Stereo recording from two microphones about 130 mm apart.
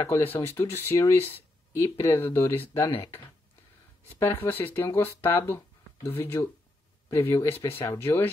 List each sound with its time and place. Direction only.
0.0 s speech: 20° left (ahead or behind)
4.2 s speech: 20° left (ahead or behind)